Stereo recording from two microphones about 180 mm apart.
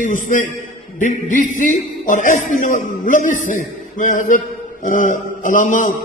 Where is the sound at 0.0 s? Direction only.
45° left (ahead or behind).